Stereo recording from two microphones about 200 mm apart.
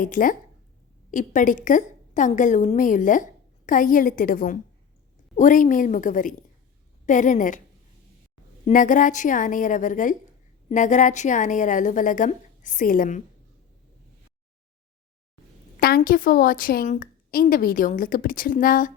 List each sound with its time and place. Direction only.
0.0 s a woman's voice: 45° left (ahead or behind)
8.6 s a woman's voice: 40° left (ahead or behind)
15.8 s a woman's voice: 45° left (ahead or behind)